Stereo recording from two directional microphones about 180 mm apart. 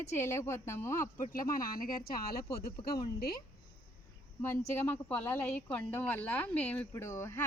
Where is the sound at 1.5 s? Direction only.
50° left (ahead or behind).